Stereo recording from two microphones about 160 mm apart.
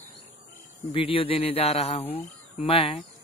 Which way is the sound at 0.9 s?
35° left (ahead or behind).